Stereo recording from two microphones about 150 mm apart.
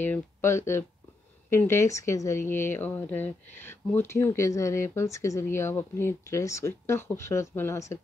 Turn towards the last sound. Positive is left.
turn(degrees=20)  # may be behind; listen again after turning